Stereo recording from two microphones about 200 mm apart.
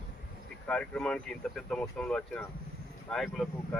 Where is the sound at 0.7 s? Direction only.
5° left (ahead or behind).